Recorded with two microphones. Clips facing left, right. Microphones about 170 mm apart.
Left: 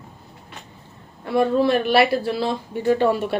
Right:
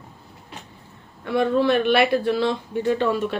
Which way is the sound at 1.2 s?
40° left (ahead or behind).